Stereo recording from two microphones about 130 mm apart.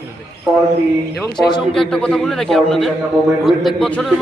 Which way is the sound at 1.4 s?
5° right (ahead or behind).